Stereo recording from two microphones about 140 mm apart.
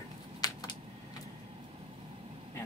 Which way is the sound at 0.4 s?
30° left (ahead or behind).